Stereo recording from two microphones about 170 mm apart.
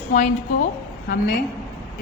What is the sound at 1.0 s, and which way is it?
Speech, 60° left (ahead or behind).